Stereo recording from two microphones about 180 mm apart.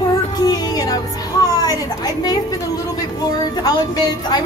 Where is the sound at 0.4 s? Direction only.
20° left (ahead or behind).